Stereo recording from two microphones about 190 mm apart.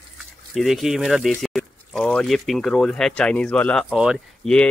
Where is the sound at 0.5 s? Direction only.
Centre (ahead or behind).